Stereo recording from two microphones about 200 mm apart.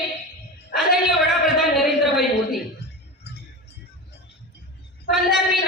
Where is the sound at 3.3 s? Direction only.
60° left (ahead or behind).